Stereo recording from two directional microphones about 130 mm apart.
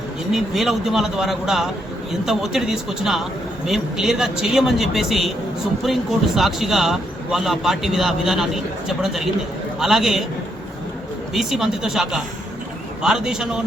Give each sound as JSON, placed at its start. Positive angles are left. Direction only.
{"t": 0.3, "sound": "speech", "side_deg": 0}
{"t": 11.3, "sound": "speech", "side_deg": -5}